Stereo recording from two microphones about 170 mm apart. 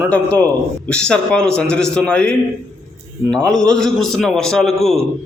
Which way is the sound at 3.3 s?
5° left (ahead or behind).